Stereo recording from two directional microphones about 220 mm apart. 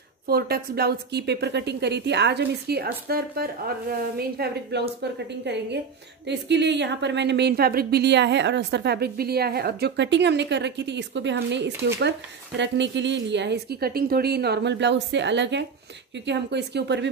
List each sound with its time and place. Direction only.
0.3 s speech: 45° right (ahead or behind)